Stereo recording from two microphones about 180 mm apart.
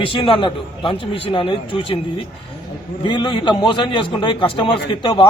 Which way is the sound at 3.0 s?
25° left (ahead or behind).